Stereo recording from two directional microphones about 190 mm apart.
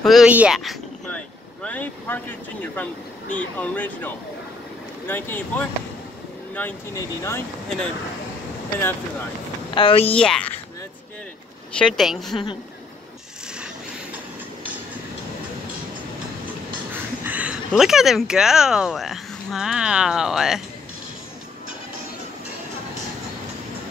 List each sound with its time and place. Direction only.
0.0 s speech: centre (ahead or behind); by 7.4 s 15° left (ahead or behind)
8.7 s speech: 10° left (ahead or behind)
9.8 s speech: 30° left (ahead or behind)
10.1 s a woman's voice: 5° left (ahead or behind)
11.8 s a woman's voice: centre (ahead or behind)
16.9 s speech: 10° right (ahead or behind)